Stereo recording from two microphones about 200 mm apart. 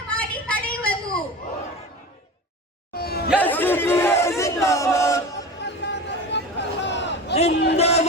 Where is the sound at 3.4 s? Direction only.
10° left (ahead or behind).